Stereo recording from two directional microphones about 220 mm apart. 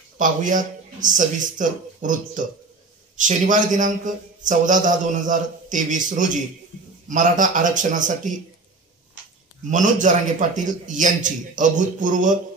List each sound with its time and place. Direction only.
0.2 s a man's voice: 35° right (ahead or behind)
9.7 s a man's voice: 35° right (ahead or behind)